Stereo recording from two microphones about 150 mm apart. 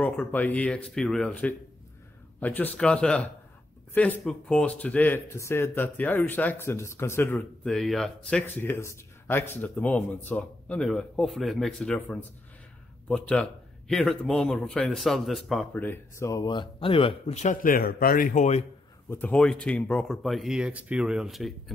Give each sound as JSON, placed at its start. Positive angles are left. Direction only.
{"t": 0.0, "sound": "speech", "side_deg": 10}
{"t": 7.6, "sound": "speech", "side_deg": 0}
{"t": 15.7, "sound": "speech", "side_deg": 15}
{"t": 17.6, "sound": "a man's voice", "side_deg": 70}
{"t": 19.0, "sound": "speech", "side_deg": 10}